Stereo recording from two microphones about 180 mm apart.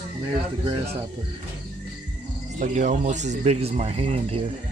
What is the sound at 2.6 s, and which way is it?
Speech, 40° right (ahead or behind).